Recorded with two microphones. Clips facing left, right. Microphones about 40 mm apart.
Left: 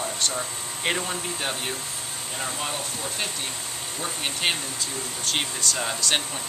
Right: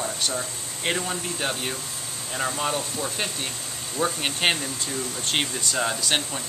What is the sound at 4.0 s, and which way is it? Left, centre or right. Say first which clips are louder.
Speech: right 4 dB; right.